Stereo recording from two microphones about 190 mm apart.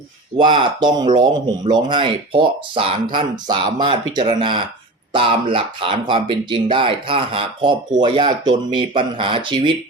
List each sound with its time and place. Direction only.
0.3 s speech: 25° right (ahead or behind)